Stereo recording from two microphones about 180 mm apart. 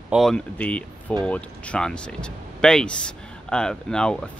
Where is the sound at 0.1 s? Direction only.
Centre (ahead or behind).